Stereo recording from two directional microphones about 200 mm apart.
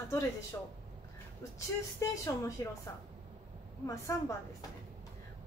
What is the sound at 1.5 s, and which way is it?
A woman's voice, 15° left (ahead or behind).